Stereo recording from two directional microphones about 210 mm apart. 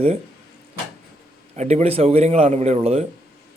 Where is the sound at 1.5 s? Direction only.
35° right (ahead or behind).